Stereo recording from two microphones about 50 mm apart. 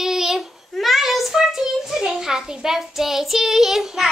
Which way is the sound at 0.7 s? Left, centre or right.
Centre.